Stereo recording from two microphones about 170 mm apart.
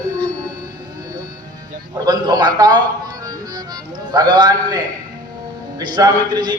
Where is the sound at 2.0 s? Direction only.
25° right (ahead or behind).